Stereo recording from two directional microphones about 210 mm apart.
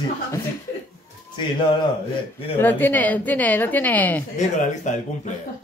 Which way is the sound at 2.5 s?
10° left (ahead or behind).